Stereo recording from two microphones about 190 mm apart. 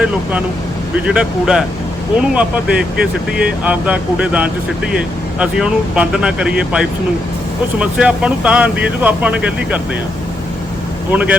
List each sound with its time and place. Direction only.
0.0 s speech: 10° right (ahead or behind)
11.1 s speech: 5° right (ahead or behind)